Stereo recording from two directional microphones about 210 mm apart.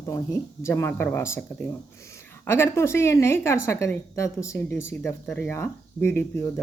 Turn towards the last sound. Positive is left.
turn(degrees=10)  # may be behind; listen again after turning